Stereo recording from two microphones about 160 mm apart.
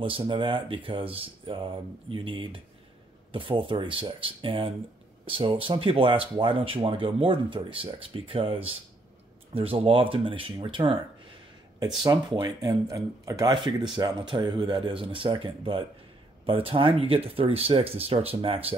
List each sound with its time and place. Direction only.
0.0 s speech: 30° right (ahead or behind)
12.0 s speech: 25° right (ahead or behind)